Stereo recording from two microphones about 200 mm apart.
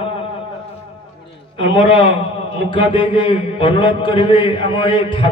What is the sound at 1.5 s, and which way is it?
A man's voice, 25° left (ahead or behind).